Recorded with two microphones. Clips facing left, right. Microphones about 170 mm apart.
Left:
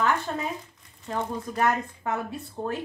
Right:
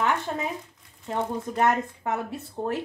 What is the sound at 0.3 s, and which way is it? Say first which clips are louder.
Speech: right 1 dB; 10° right (ahead or behind).